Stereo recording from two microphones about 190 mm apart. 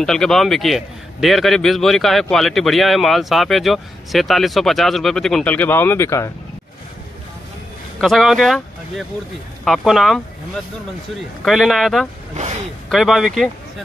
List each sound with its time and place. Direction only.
0.0 s a man's voice: 5° left (ahead or behind)
8.0 s a man's voice: centre (ahead or behind)
11.4 s a man's voice: centre (ahead or behind)
12.4 s speech: 40° right (ahead or behind)
12.9 s a man's voice: centre (ahead or behind)